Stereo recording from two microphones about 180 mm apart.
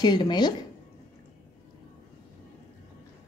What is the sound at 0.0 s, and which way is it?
Speech, 25° left (ahead or behind).